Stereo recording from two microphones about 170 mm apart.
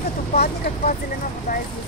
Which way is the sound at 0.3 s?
55° left (ahead or behind).